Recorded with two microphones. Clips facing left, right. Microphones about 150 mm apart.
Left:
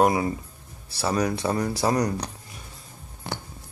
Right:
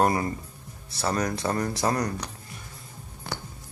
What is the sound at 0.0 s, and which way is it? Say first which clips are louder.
Speech: left 3 dB; 10° left (ahead or behind).